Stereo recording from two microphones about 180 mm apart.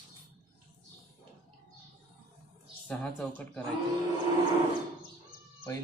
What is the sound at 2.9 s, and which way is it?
Speech, 5° left (ahead or behind).